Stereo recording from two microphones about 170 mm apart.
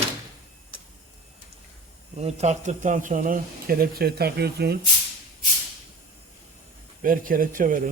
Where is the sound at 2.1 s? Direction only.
40° right (ahead or behind); by 4.8 s 70° right (ahead or behind).